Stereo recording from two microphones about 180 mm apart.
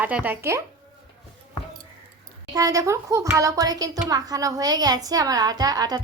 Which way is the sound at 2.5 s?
20° right (ahead or behind).